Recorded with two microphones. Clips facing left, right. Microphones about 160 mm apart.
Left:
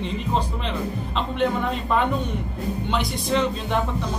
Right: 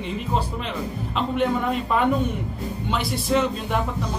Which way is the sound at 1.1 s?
5° right (ahead or behind).